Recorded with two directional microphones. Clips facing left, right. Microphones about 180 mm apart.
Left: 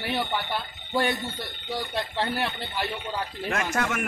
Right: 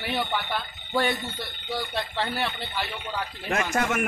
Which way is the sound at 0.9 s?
15° left (ahead or behind).